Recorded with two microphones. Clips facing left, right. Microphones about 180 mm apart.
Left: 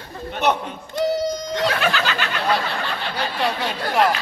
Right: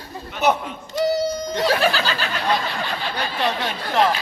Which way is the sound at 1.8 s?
35° right (ahead or behind).